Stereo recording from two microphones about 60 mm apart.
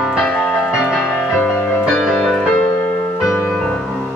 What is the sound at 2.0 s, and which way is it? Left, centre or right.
Music, centre.